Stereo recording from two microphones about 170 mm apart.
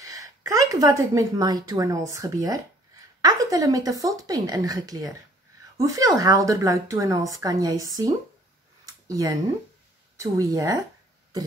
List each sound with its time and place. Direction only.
0.0 s a woman's voice: 20° right (ahead or behind)